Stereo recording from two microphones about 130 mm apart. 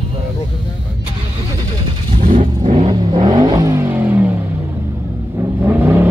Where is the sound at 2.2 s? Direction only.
90° right.